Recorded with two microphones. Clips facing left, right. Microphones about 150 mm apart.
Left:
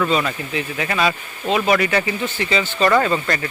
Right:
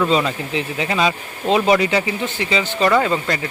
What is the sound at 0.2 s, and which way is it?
Speech, 20° right (ahead or behind).